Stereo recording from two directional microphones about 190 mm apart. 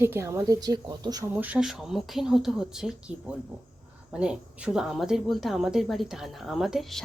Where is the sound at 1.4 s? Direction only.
5° right (ahead or behind).